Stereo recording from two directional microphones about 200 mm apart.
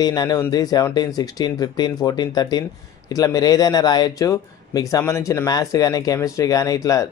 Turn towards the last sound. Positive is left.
turn(degrees=15)  # may be behind; listen again after turning